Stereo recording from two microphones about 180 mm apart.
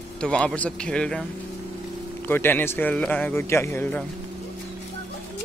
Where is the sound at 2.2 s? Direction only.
10° left (ahead or behind).